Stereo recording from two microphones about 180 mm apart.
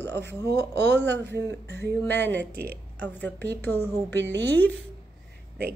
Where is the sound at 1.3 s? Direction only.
75° right (ahead or behind).